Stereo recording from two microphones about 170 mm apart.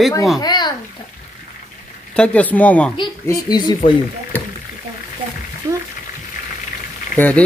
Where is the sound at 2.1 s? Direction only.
5° left (ahead or behind).